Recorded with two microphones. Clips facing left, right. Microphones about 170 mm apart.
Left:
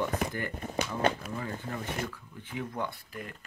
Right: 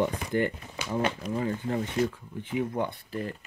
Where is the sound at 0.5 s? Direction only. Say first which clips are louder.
Left 8 dB; 45° left (ahead or behind).